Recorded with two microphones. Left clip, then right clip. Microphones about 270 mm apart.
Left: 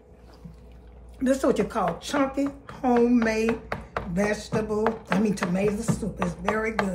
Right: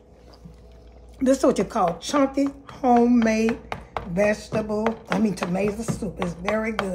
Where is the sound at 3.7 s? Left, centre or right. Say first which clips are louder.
Right 1 dB; right.